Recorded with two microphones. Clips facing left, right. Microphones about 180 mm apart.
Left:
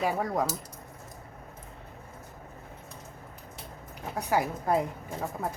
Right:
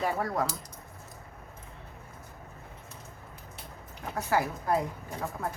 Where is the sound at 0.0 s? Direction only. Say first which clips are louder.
Left 1 dB; 15° left (ahead or behind).